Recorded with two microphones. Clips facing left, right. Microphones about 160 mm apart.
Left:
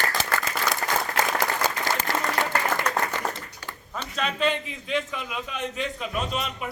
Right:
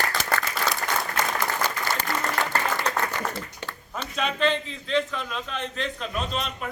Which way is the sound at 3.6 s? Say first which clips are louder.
Right 3 dB; 25° right (ahead or behind).